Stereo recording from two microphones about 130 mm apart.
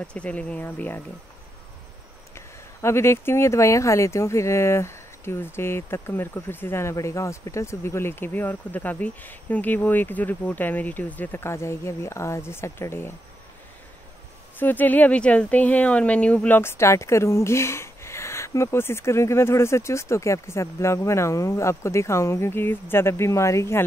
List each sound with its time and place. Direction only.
0.0 s speech: 10° left (ahead or behind)
2.3 s speech: 20° left (ahead or behind)
14.6 s speech: 15° left (ahead or behind)